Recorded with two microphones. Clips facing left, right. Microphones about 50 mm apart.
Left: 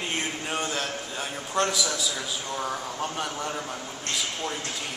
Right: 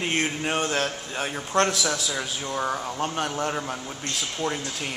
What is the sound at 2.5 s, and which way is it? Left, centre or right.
Speech, right.